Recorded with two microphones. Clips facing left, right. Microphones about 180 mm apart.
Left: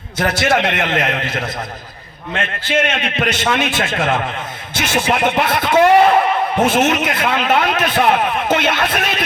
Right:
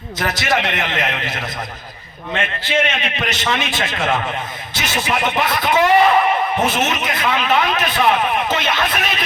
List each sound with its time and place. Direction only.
0.5 s a man's voice: 50° left (ahead or behind)